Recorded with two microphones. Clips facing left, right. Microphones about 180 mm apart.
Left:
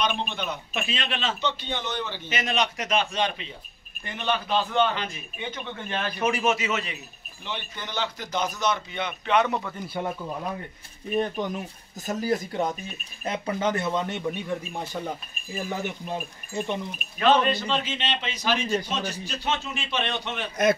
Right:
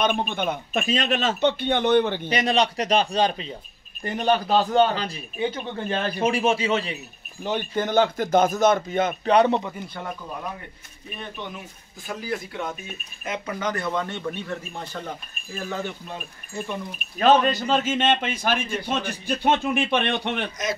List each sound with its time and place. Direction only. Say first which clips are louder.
0.0 s speech: right 5 dB; 50° right (ahead or behind)
2.2 s speech: right 5 dB; 35° right (ahead or behind)
7.4 s speech: right 11 dB; 45° right (ahead or behind)
11.1 s speech: left 9 dB; 40° left (ahead or behind); by 16.8 s 20° left (ahead or behind)
17.2 s speech: right 3 dB; 40° right (ahead or behind)